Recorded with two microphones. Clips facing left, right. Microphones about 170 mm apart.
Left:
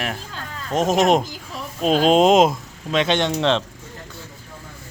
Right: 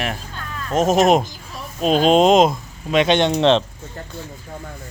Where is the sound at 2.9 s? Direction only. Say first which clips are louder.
Right 4 dB; 15° right (ahead or behind).